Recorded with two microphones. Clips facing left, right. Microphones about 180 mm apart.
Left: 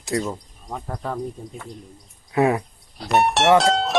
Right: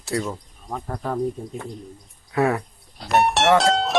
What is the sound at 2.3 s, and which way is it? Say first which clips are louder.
Speech: left 2 dB; 20° left (ahead or behind).